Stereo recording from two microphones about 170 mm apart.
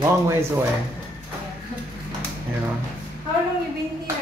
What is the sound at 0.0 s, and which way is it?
Speech, 15° right (ahead or behind).